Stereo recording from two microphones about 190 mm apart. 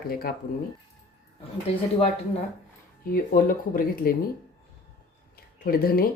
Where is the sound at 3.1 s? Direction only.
50° left (ahead or behind).